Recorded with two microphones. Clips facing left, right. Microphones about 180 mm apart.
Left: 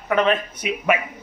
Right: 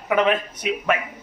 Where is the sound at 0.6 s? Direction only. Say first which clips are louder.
Right 1 dB; 5° left (ahead or behind).